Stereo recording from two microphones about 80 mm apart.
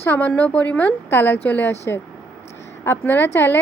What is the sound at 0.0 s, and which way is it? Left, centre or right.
Speech, left.